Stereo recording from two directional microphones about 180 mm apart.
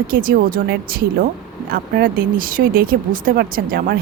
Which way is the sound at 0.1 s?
50° right (ahead or behind).